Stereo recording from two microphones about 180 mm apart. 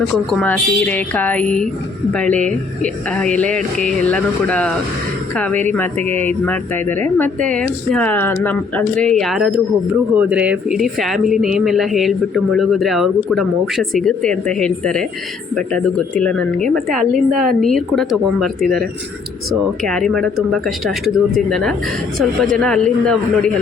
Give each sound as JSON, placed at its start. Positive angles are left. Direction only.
{"t": 0.3, "sound": "speech", "side_deg": 5}